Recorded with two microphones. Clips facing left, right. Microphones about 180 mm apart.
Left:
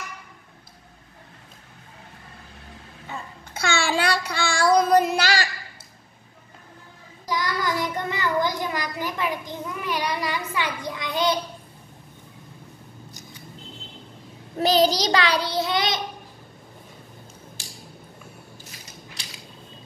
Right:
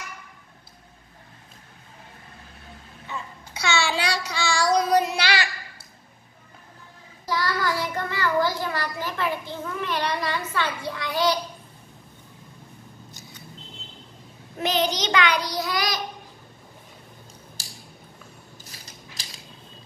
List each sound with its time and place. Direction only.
3.1 s child singing: 50° left (ahead or behind)
7.2 s child singing: 15° left (ahead or behind)
14.6 s child singing: 35° left (ahead or behind)